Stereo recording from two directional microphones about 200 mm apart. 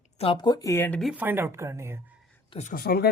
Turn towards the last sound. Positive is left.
turn(degrees=50)  # may be behind; listen again after turning